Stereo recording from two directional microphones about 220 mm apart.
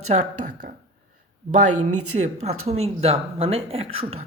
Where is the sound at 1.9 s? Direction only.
90° right.